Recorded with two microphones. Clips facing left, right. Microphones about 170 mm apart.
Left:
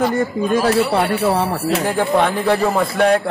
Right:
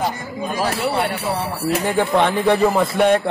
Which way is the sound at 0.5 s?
55° left (ahead or behind).